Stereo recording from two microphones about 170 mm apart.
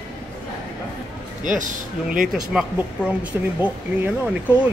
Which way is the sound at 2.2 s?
5° right (ahead or behind).